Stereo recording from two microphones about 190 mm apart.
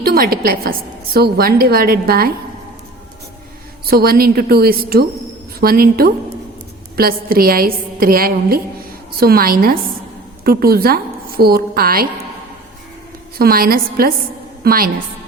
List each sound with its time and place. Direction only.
0.0 s a woman's voice: 50° right (ahead or behind)
3.8 s a woman's voice: 50° right (ahead or behind)
13.4 s a woman's voice: 50° right (ahead or behind)